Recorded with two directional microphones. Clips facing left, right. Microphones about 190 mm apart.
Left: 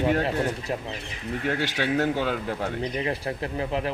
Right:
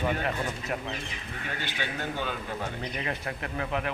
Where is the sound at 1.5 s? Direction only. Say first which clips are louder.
Left 10 dB; 90° left.